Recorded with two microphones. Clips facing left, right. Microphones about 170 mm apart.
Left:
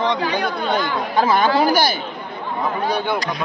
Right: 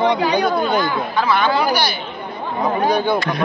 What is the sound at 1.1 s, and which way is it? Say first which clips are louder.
Speech: left 2 dB; 45° left (ahead or behind).